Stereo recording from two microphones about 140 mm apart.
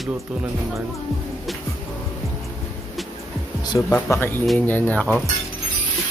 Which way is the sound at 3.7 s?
20° left (ahead or behind).